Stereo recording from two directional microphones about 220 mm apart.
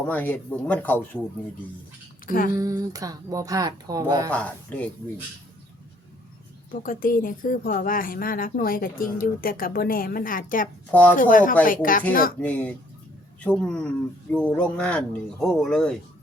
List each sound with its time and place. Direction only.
0.0 s speech: 10° left (ahead or behind)
2.2 s speech: 40° left (ahead or behind)
2.5 s speech: 15° right (ahead or behind)
4.3 s speech: 5° left (ahead or behind)
6.8 s speech: 40° left (ahead or behind)
10.9 s speech: 5° left (ahead or behind)
11.2 s speech: 40° left (ahead or behind)
12.4 s speech: 5° left (ahead or behind)